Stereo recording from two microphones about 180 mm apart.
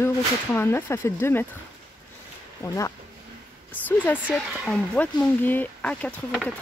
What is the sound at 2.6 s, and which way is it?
Speech, 15° left (ahead or behind).